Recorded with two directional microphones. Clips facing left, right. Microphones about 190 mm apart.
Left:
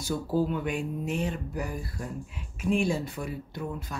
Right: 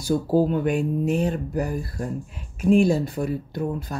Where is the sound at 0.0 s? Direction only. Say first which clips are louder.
Right 7 dB; 40° right (ahead or behind).